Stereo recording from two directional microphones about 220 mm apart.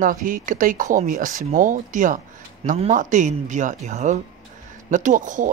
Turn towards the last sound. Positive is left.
turn(degrees=-35)  # may be behind; listen again after turning